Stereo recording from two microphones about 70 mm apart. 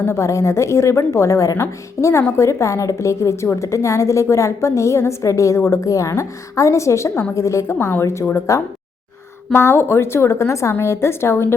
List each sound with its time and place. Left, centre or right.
0.0 s a woman's voice: left